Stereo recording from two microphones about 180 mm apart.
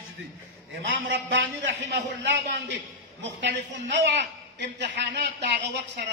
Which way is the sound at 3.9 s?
75° right (ahead or behind).